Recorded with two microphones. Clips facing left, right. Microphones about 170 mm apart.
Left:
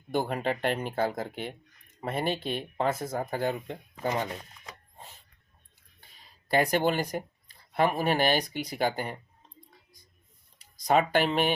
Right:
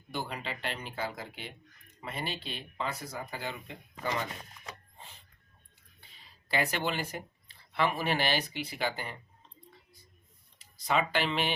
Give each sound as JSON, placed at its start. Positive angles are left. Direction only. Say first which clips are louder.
{"t": 0.1, "sound": "speech", "louder": "left 9 dB", "side_deg": 50}
{"t": 6.0, "sound": "speech", "louder": "left 2 dB", "side_deg": 40}
{"t": 10.8, "sound": "speech", "louder": "left 6 dB", "side_deg": 45}